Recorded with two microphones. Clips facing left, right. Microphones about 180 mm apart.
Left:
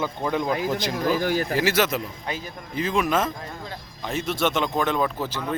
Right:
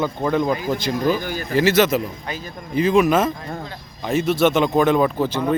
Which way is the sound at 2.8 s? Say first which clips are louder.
Right 7 dB; 10° right (ahead or behind).